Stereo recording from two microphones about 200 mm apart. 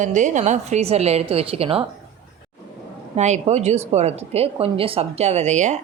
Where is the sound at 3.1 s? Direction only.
35° right (ahead or behind).